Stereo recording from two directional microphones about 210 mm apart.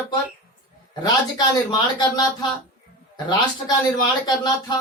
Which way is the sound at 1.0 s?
20° left (ahead or behind).